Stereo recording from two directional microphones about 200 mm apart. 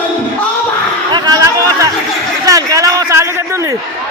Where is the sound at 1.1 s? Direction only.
15° right (ahead or behind).